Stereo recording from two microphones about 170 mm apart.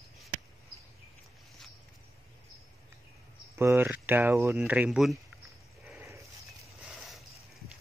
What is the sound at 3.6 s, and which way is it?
Speech, 15° right (ahead or behind).